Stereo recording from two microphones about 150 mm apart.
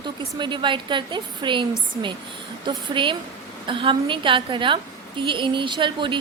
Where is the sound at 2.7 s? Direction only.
35° right (ahead or behind).